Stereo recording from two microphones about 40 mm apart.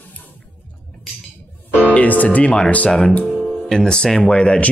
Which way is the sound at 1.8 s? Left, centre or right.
Left.